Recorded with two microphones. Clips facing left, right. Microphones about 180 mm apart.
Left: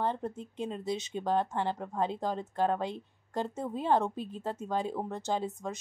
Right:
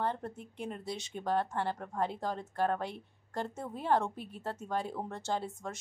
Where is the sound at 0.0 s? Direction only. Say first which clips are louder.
Left 3 dB; 20° left (ahead or behind).